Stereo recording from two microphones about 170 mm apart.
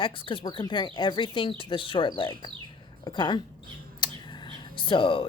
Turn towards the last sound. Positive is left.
turn(degrees=30)  # may be behind; listen again after turning